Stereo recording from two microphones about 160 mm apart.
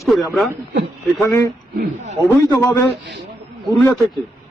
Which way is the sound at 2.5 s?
15° left (ahead or behind).